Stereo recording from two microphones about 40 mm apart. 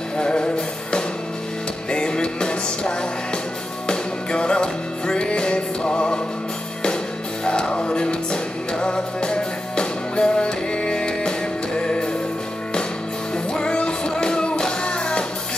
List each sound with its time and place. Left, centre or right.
0.2 s music: left
1.9 s music: left
7.4 s music: left
13.5 s music: left